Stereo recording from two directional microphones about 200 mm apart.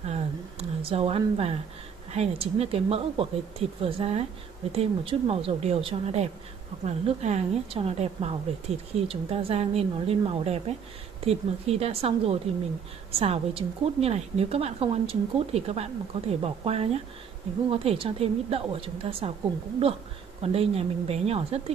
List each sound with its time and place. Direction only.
0.0 s a woman's voice: 30° right (ahead or behind)
20.5 s a woman's voice: 30° right (ahead or behind)